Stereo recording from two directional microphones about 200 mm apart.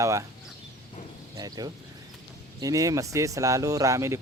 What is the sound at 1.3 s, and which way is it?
Speech, 20° right (ahead or behind).